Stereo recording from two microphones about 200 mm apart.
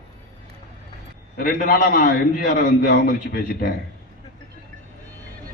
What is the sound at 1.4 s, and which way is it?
A man's voice, 45° left (ahead or behind).